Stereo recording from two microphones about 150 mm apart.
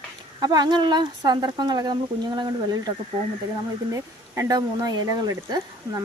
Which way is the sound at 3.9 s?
25° right (ahead or behind).